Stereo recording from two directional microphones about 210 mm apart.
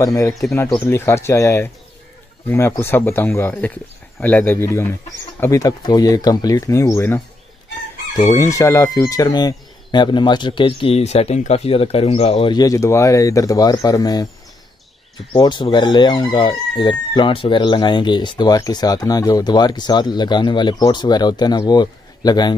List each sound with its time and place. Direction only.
0.0 s speech: 15° left (ahead or behind)
8.3 s chicken: 15° left (ahead or behind)
15.3 s chicken: 20° left (ahead or behind)